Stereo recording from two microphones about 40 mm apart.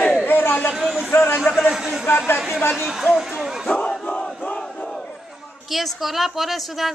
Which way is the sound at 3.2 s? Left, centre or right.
Centre.